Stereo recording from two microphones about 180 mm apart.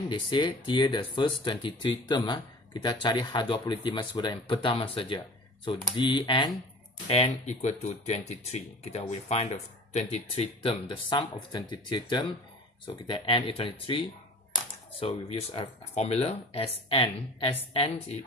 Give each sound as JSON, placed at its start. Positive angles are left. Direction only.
{"t": 0.1, "sound": "speech", "side_deg": 25}
{"t": 10.9, "sound": "speech", "side_deg": 25}